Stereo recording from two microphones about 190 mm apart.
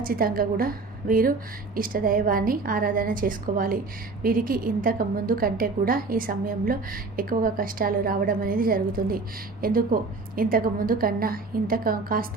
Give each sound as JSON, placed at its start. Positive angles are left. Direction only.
{"t": 0.0, "sound": "a woman's voice", "side_deg": -50}